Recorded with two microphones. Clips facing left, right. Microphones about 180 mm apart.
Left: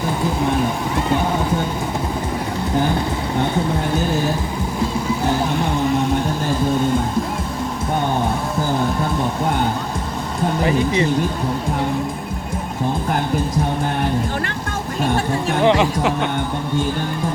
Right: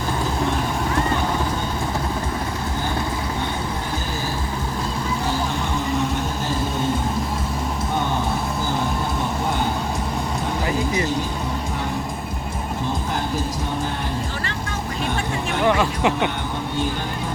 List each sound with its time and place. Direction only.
15.6 s music: 25° left (ahead or behind)